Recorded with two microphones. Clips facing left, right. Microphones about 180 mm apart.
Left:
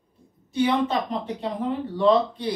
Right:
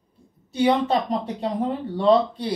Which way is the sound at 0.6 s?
40° right (ahead or behind).